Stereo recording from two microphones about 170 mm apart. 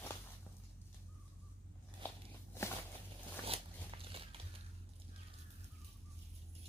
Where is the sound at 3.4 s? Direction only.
35° right (ahead or behind).